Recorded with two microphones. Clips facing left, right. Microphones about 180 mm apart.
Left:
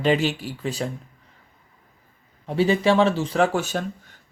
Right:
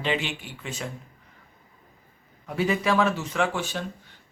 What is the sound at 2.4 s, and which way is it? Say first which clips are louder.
Speech: left 5 dB; 30° left (ahead or behind).